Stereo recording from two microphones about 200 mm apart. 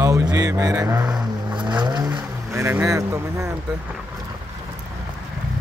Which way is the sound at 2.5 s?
15° right (ahead or behind).